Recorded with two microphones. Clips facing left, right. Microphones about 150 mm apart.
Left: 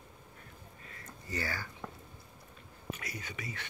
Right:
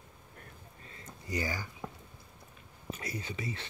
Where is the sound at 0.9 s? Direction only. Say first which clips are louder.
Right 3 dB; 20° right (ahead or behind).